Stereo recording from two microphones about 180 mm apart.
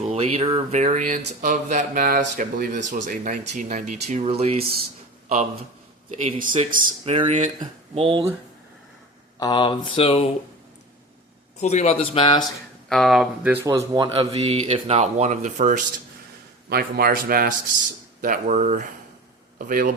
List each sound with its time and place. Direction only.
0.1 s speech: 35° right (ahead or behind)
1.2 s a man's voice: 65° right (ahead or behind)
1.5 s speech: 45° right (ahead or behind)
6.1 s speech: 40° right (ahead or behind)
7.0 s speech: 35° right (ahead or behind)
7.6 s speech: 30° right (ahead or behind)
9.4 s speech: 25° left (ahead or behind)
11.6 s a man's voice: 40° left (ahead or behind)
12.9 s speech: centre (ahead or behind)
13.7 s speech: 20° right (ahead or behind); by 15.8 s 45° right (ahead or behind)
16.6 s a man's voice: 60° right (ahead or behind)